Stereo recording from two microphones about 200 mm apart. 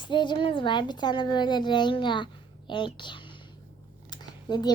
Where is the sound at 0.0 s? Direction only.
25° left (ahead or behind).